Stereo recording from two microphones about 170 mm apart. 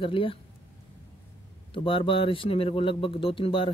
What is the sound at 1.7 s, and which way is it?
Speech, 30° left (ahead or behind).